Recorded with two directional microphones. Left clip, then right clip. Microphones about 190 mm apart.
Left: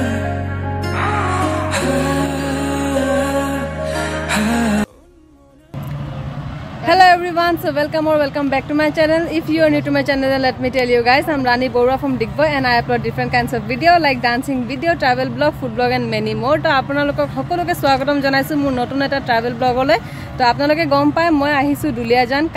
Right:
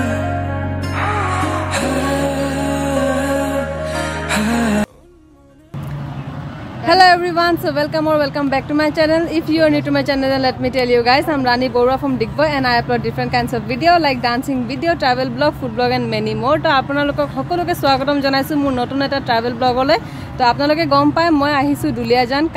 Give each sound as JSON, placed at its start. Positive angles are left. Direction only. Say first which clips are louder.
{"t": 1.2, "sound": "music", "louder": "left 1 dB", "side_deg": 0}
{"t": 6.9, "sound": "speech", "louder": "even", "side_deg": 0}